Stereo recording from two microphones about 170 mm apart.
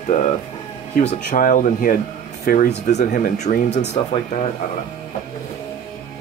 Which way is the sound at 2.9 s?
45° left (ahead or behind).